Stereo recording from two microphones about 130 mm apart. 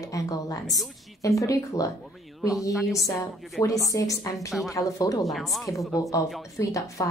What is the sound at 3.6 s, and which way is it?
Speech, 25° left (ahead or behind).